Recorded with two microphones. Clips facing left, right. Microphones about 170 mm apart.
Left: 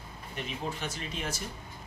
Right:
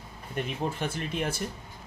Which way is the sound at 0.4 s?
50° right (ahead or behind).